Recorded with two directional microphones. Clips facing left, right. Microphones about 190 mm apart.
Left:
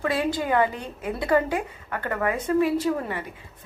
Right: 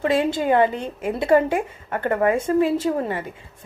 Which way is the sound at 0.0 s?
25° right (ahead or behind).